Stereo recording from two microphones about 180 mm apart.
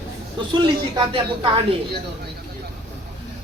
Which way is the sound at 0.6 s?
25° right (ahead or behind).